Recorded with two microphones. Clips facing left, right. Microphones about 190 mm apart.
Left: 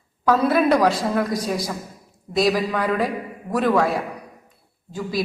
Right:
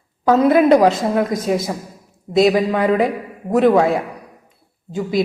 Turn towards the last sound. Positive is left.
turn(degrees=-20)  # may be behind; listen again after turning